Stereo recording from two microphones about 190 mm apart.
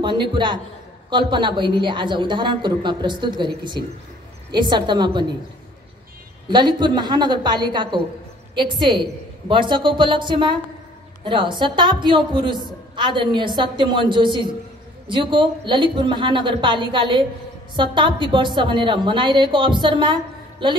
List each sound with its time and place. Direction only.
0.0 s a woman's voice: 25° right (ahead or behind)
4.5 s a woman's voice: 25° right (ahead or behind)
6.5 s a woman's voice: 25° right (ahead or behind)